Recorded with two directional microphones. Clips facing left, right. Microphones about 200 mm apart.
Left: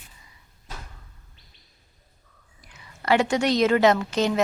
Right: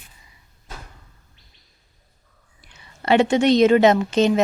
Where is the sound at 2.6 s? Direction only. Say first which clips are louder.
Right 2 dB; 25° right (ahead or behind).